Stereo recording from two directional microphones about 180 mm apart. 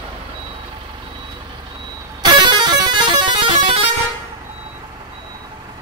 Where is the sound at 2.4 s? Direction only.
25° right (ahead or behind).